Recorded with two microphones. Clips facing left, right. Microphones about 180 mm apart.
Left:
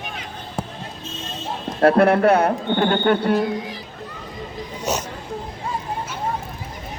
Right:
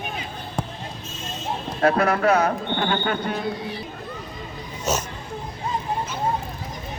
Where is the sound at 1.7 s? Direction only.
55° left (ahead or behind).